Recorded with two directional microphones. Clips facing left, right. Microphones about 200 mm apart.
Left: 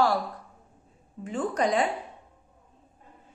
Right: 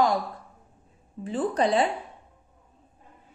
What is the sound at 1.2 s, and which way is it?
Speech, 30° right (ahead or behind).